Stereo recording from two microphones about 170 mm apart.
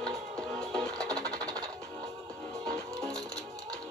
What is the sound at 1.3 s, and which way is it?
Music, 20° right (ahead or behind).